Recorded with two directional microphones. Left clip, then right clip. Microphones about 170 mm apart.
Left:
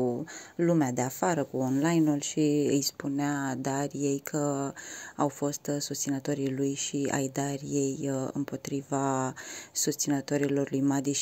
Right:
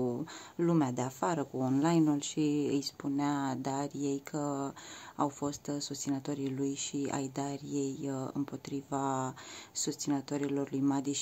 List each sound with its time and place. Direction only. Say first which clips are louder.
0.0 s speech: left 5 dB; 10° left (ahead or behind)